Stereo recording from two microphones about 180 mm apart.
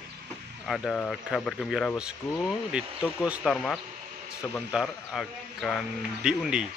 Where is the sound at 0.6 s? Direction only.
Centre (ahead or behind).